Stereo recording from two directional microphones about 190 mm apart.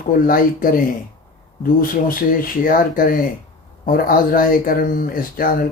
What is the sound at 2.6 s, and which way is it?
Speech, 50° left (ahead or behind).